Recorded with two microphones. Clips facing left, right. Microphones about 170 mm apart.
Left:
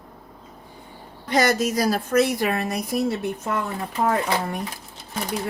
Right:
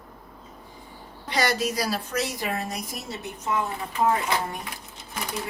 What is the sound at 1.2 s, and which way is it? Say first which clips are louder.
A woman's voice: left 5 dB; 45° left (ahead or behind).